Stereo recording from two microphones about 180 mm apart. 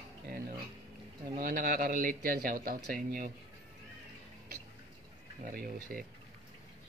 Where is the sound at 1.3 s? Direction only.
50° right (ahead or behind).